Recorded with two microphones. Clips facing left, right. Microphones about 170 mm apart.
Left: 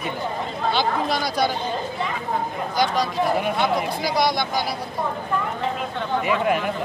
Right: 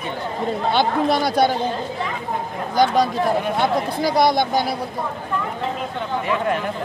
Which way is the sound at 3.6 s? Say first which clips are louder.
Right 2 dB; 50° right (ahead or behind).